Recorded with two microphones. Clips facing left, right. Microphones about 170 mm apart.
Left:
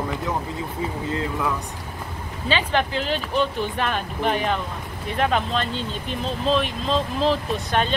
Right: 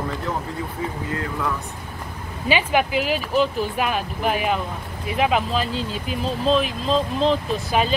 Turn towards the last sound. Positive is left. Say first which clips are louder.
# right 1 dB
turn(degrees=0)  # may be behind; listen again after turning